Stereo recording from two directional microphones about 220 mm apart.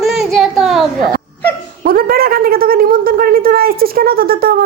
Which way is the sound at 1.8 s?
40° right (ahead or behind).